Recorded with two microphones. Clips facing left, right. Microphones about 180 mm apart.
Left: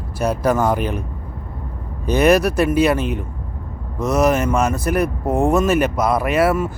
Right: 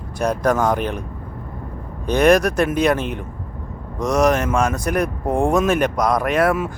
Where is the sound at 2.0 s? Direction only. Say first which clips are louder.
Even; 5° left (ahead or behind).